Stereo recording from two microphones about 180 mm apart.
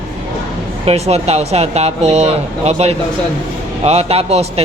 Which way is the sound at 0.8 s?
35° right (ahead or behind).